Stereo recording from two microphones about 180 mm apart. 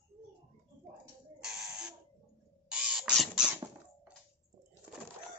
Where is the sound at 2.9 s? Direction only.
Centre (ahead or behind).